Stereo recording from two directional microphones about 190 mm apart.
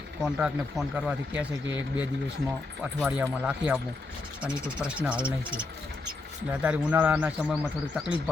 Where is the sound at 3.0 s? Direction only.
5° right (ahead or behind).